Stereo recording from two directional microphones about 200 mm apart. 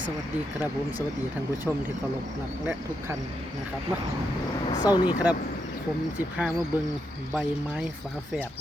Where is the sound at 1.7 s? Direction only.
Centre (ahead or behind).